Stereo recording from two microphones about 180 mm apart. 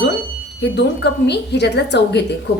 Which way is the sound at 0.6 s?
70° left (ahead or behind).